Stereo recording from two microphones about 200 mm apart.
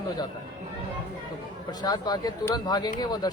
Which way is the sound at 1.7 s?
20° left (ahead or behind).